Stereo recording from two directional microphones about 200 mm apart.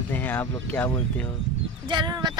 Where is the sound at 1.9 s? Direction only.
20° right (ahead or behind).